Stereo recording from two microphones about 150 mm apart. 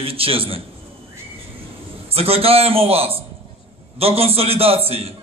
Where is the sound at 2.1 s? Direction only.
40° right (ahead or behind).